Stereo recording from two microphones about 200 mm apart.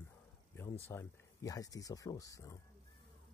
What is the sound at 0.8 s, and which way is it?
Speech, 10° left (ahead or behind).